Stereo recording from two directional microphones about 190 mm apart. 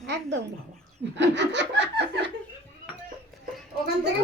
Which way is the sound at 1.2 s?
70° right (ahead or behind).